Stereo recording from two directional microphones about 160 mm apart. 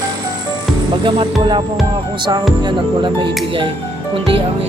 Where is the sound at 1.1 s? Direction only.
30° right (ahead or behind).